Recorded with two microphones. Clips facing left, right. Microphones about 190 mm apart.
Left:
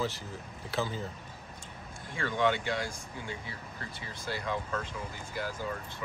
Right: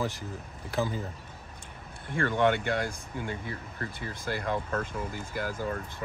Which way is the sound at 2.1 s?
55° right (ahead or behind).